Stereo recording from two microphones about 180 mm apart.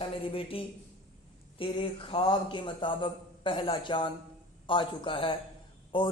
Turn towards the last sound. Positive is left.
turn(degrees=25)  # may be behind; listen again after turning